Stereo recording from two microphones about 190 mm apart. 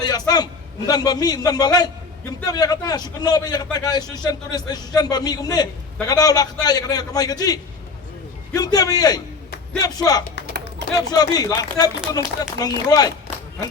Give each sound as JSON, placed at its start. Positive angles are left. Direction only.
{"t": 0.0, "sound": "a man's voice", "side_deg": 20}